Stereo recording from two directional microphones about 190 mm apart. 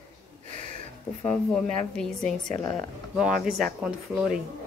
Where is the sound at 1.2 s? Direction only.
5° left (ahead or behind).